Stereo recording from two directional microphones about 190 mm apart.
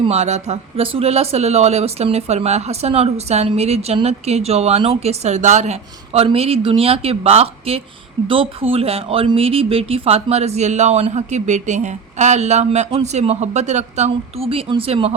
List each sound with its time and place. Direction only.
0.0 s speech: 35° right (ahead or behind)